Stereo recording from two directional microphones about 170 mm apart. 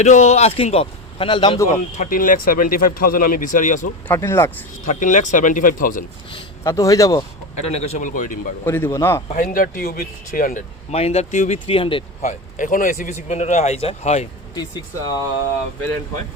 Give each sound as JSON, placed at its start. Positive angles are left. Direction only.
{"t": 0.0, "sound": "a man's voice", "side_deg": 40}
{"t": 1.5, "sound": "a man's voice", "side_deg": 15}
{"t": 2.0, "sound": "speech", "side_deg": 50}
{"t": 4.1, "sound": "a man's voice", "side_deg": 15}
{"t": 4.9, "sound": "speech", "side_deg": 50}
{"t": 6.3, "sound": "speech", "side_deg": 20}
{"t": 7.7, "sound": "speech", "side_deg": 40}
{"t": 8.6, "sound": "a man's voice", "side_deg": 15}
{"t": 9.3, "sound": "speech", "side_deg": 55}
{"t": 10.9, "sound": "a man's voice", "side_deg": 35}
{"t": 12.3, "sound": "speech", "side_deg": 50}
{"t": 14.5, "sound": "speech", "side_deg": 25}